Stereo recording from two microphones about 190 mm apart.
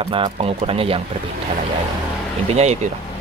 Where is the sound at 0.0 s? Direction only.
30° right (ahead or behind).